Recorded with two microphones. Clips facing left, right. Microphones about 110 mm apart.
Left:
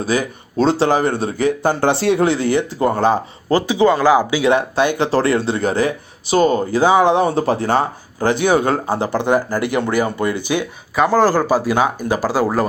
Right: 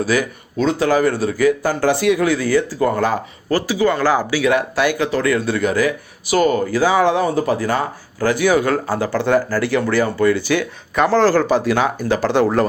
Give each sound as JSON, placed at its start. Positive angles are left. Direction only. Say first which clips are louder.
{"t": 0.0, "sound": "speech", "louder": "right 1 dB", "side_deg": 25}